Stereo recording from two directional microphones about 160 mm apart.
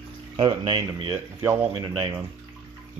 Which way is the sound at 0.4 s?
25° right (ahead or behind).